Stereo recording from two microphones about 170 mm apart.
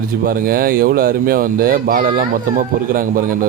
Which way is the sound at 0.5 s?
55° right (ahead or behind).